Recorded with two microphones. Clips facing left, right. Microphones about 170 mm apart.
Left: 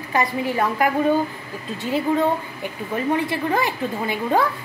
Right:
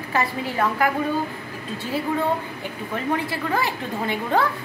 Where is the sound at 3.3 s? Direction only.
15° left (ahead or behind).